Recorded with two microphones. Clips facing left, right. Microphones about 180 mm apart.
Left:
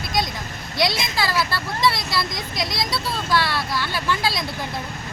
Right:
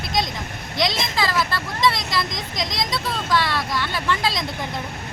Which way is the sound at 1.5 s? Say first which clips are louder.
Even; 20° right (ahead or behind).